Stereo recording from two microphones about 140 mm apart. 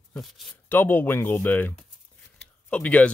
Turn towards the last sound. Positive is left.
turn(degrees=10)  # may be behind; listen again after turning